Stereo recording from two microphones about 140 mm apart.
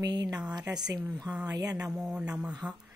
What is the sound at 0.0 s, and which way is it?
Speech, 30° right (ahead or behind).